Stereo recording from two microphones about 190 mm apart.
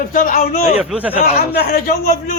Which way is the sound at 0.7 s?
5° right (ahead or behind).